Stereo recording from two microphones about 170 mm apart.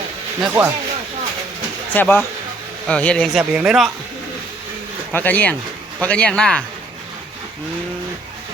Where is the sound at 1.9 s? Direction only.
10° left (ahead or behind); by 3.9 s 5° right (ahead or behind).